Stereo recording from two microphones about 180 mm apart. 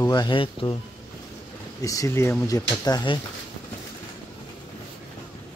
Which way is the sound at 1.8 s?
15° left (ahead or behind).